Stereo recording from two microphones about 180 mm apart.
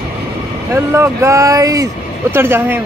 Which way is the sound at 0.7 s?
15° right (ahead or behind).